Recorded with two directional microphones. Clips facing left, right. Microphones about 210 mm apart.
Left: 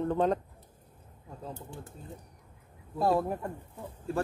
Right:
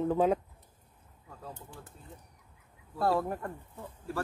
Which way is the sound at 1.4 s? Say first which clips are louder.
Left 4 dB; 25° left (ahead or behind).